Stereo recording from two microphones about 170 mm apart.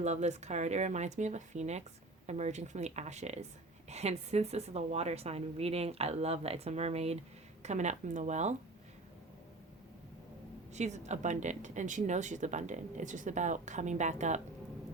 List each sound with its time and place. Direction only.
0.0 s a woman's voice: 40° right (ahead or behind)
10.8 s speech: 40° right (ahead or behind)